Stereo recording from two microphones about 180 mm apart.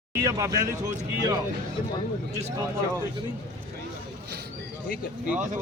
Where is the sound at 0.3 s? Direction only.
20° right (ahead or behind).